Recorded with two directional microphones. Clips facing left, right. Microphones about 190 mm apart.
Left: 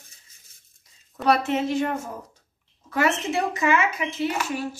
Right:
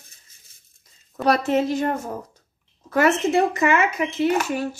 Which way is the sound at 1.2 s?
40° right (ahead or behind).